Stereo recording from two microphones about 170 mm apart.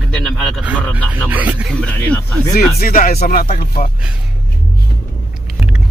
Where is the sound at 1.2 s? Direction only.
10° right (ahead or behind).